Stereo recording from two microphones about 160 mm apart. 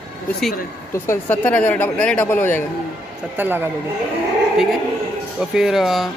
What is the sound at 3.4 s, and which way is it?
Speech, 10° right (ahead or behind).